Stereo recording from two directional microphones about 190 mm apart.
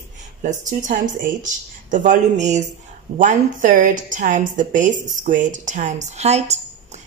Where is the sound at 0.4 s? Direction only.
40° right (ahead or behind).